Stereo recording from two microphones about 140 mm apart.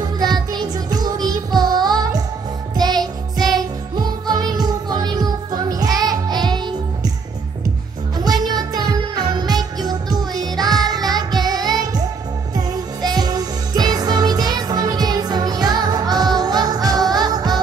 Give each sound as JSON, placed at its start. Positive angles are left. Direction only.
{"t": 0.0, "sound": "music", "side_deg": -30}
{"t": 3.3, "sound": "music", "side_deg": 0}
{"t": 3.9, "sound": "music", "side_deg": -30}
{"t": 8.4, "sound": "music", "side_deg": -30}